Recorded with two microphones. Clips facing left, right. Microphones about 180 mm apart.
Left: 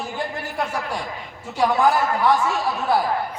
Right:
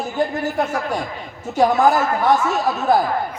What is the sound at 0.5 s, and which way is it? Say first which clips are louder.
A man's voice: right 5 dB; 45° right (ahead or behind).